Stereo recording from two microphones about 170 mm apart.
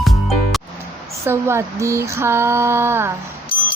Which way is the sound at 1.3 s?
15° right (ahead or behind).